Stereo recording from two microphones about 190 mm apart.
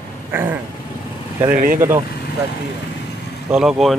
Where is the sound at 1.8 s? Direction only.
15° right (ahead or behind).